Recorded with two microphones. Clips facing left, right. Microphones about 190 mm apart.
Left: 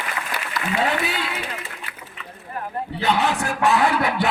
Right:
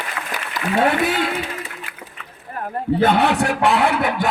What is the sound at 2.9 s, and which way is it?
Speech, 55° right (ahead or behind).